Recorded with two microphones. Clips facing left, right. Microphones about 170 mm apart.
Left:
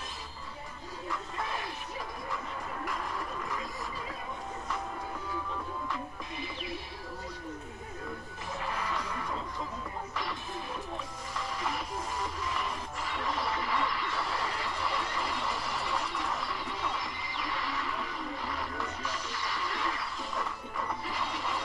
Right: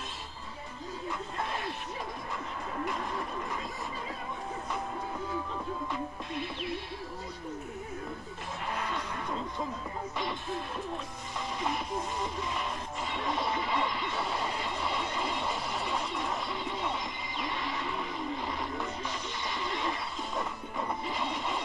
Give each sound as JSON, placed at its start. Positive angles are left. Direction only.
{"t": 11.3, "sound": "music", "side_deg": -20}
{"t": 21.1, "sound": "vehicle", "side_deg": -20}